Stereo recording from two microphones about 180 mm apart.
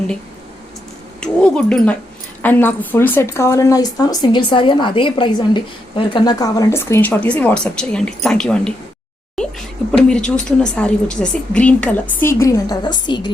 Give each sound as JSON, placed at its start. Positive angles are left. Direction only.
{"t": 1.2, "sound": "speech", "side_deg": 5}
{"t": 10.1, "sound": "speech", "side_deg": 5}